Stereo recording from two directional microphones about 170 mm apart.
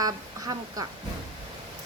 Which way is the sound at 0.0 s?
20° right (ahead or behind).